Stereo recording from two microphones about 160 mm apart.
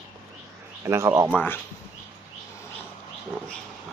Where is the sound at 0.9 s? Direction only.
15° right (ahead or behind).